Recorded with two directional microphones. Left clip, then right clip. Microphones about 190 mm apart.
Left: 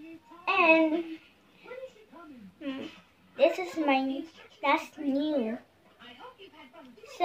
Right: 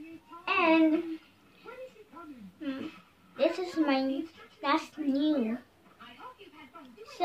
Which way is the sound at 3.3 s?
20° right (ahead or behind).